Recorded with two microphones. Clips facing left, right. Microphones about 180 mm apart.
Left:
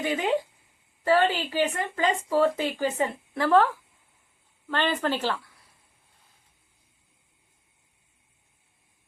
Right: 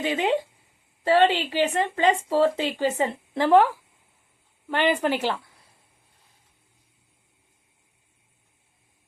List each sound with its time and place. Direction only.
0.0 s speech: 25° right (ahead or behind)